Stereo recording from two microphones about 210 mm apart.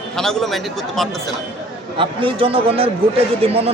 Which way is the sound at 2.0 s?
25° right (ahead or behind).